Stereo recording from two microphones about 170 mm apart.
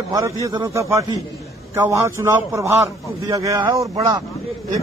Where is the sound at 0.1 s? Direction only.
20° right (ahead or behind).